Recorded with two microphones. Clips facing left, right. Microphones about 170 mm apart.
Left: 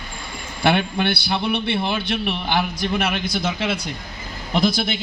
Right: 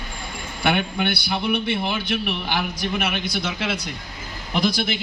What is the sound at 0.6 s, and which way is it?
A man's voice, 35° left (ahead or behind).